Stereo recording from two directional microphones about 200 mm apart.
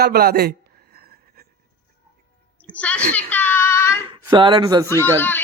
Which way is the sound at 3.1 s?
10° left (ahead or behind).